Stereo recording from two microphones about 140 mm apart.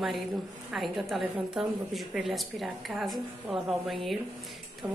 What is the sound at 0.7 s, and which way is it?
A woman's voice, centre (ahead or behind).